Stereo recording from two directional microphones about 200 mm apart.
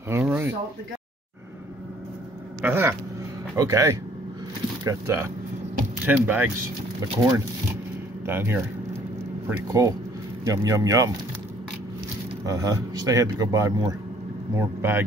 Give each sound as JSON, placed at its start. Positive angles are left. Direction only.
{"t": 0.1, "sound": "speech", "side_deg": -10}
{"t": 2.6, "sound": "speech", "side_deg": -10}
{"t": 9.7, "sound": "speech", "side_deg": -15}
{"t": 12.4, "sound": "speech", "side_deg": -15}